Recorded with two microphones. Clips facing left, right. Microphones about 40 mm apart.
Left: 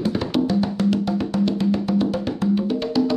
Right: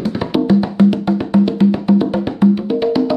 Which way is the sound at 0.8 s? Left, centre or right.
Centre.